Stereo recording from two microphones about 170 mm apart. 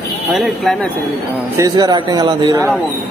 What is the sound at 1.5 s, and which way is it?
Speech, 20° right (ahead or behind).